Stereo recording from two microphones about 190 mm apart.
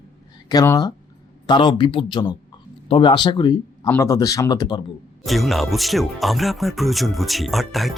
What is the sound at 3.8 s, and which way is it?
Speech, 15° left (ahead or behind).